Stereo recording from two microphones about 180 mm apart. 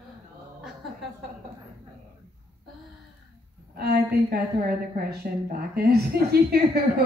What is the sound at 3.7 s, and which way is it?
A woman's voice, 60° right (ahead or behind).